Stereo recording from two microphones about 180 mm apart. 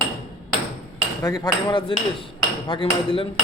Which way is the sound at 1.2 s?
25° left (ahead or behind).